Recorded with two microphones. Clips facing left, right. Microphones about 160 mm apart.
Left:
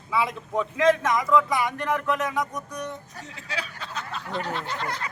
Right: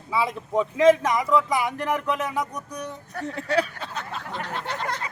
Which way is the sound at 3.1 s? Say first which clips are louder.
Right 11 dB; 60° right (ahead or behind).